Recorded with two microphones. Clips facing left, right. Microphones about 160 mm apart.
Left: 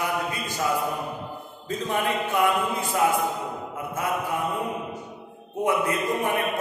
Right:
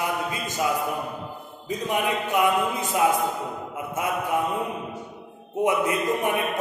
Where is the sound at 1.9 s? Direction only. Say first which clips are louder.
Right 1 dB; 15° right (ahead or behind).